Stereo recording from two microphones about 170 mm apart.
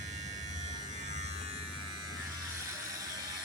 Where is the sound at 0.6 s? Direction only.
45° right (ahead or behind).